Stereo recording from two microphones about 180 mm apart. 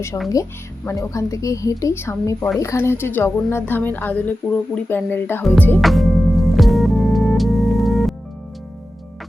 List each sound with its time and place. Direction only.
0.1 s a woman's voice: 15° left (ahead or behind)
5.8 s music: centre (ahead or behind)